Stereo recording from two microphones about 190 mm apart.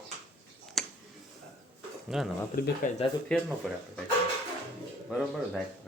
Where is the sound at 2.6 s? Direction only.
50° left (ahead or behind).